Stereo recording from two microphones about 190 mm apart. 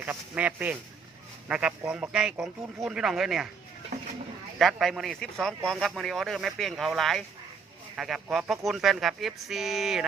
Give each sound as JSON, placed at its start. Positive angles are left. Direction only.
{"t": 0.0, "sound": "speech", "side_deg": -10}
{"t": 4.5, "sound": "speech", "side_deg": 0}